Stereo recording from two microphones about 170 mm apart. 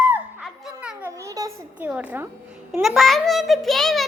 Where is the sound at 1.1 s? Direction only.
15° right (ahead or behind).